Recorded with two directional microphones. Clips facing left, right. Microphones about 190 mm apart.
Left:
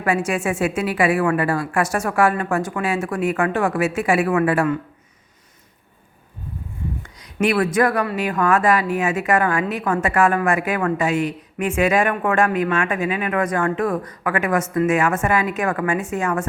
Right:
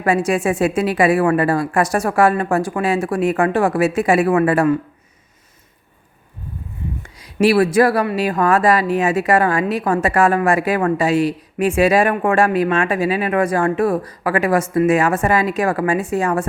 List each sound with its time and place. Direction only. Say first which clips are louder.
0.0 s a woman's voice: right 4 dB; 35° right (ahead or behind)
7.0 s a woman's voice: right 6 dB; 25° right (ahead or behind)